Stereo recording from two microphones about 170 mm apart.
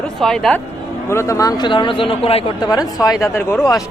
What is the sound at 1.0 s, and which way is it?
Speech, 15° left (ahead or behind).